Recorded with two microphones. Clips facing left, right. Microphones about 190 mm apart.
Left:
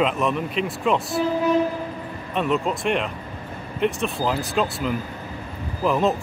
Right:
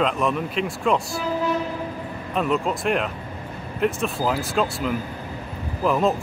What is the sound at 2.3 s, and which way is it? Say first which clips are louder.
Speech: even; centre (ahead or behind).